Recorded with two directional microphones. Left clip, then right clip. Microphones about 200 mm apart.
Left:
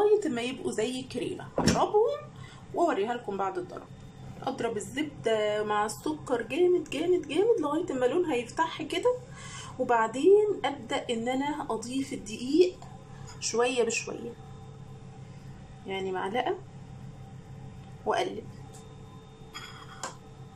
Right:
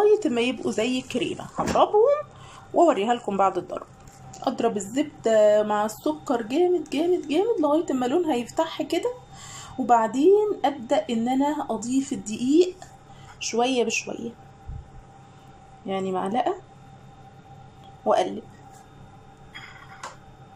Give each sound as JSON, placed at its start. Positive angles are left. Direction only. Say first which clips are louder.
{"t": 0.0, "sound": "a woman's voice", "louder": "right 5 dB", "side_deg": -10}
{"t": 15.9, "sound": "a woman's voice", "louder": "right 5 dB", "side_deg": -20}
{"t": 18.0, "sound": "a woman's voice", "louder": "right 7 dB", "side_deg": -20}